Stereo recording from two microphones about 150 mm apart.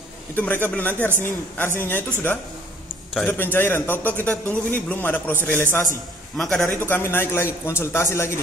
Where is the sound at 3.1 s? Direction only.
10° left (ahead or behind).